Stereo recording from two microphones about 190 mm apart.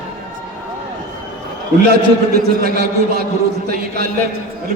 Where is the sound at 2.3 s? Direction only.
55° right (ahead or behind).